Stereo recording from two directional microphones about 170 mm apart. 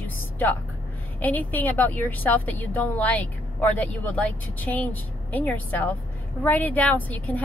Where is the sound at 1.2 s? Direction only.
10° left (ahead or behind).